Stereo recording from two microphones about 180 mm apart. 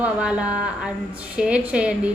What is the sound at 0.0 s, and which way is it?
A woman's voice, 5° right (ahead or behind).